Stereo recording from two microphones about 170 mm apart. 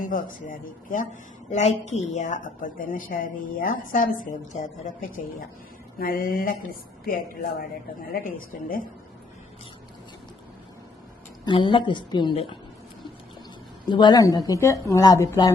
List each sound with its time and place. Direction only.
0.0 s a woman's voice: 50° left (ahead or behind)
11.4 s a woman's voice: 30° left (ahead or behind)
13.8 s a woman's voice: 25° left (ahead or behind)